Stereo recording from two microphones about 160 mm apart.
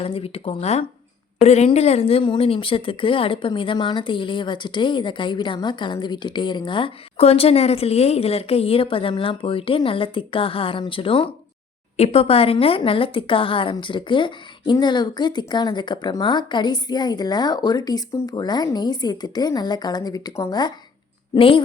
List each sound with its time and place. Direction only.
0.0 s a woman's voice: 35° left (ahead or behind)